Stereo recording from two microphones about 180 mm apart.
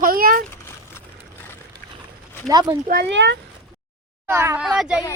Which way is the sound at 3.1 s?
80° right.